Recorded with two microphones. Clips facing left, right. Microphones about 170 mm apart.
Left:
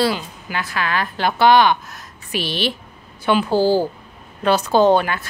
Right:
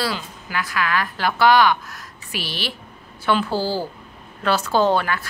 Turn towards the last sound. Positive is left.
turn(degrees=20)  # may be behind; listen again after turning